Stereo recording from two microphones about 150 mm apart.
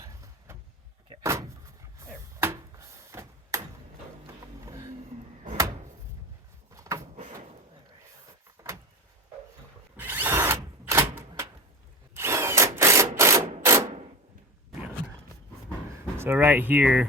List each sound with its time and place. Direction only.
0.0 s vehicle: 20° right (ahead or behind)
1.2 s door: 20° right (ahead or behind)
2.0 s a sound: 15° right (ahead or behind)
4.6 s vehicle: 20° right (ahead or behind)
6.7 s a sound: 20° right (ahead or behind)
8.6 s vehicle: 25° right (ahead or behind)
10.0 s drill: 10° right (ahead or behind)
12.1 s ratchet: 15° right (ahead or behind)
16.1 s speech: 15° right (ahead or behind)